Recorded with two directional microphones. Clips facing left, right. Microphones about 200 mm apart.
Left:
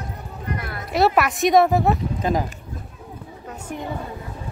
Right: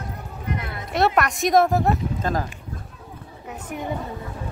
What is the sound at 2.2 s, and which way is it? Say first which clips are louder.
Speech: left 3 dB; 15° left (ahead or behind).